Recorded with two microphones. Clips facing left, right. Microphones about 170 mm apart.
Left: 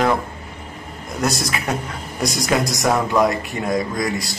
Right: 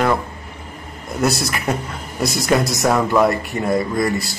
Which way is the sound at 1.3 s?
60° right (ahead or behind).